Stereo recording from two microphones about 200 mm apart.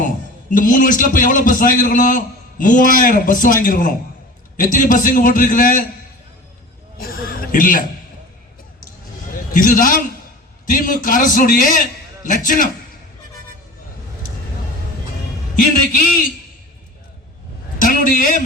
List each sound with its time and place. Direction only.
0.5 s a man's voice: 40° left (ahead or behind)
7.0 s a man's voice: 45° left (ahead or behind)
9.5 s a man's voice: 40° left (ahead or behind)
15.5 s a man's voice: 40° left (ahead or behind)
17.7 s a man's voice: 40° left (ahead or behind)